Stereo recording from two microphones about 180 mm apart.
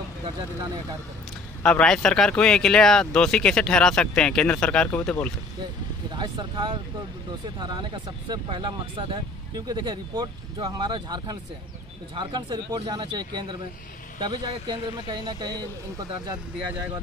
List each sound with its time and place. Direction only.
1.6 s speech: 5° left (ahead or behind)
6.1 s speech: 25° right (ahead or behind)